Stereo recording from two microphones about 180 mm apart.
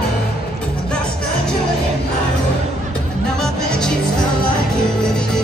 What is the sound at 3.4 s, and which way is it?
Music, 5° left (ahead or behind).